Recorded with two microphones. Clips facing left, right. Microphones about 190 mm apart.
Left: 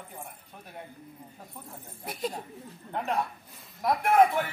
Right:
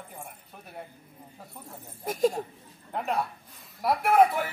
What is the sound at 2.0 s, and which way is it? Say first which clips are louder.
Speech: right 9 dB; 45° right (ahead or behind).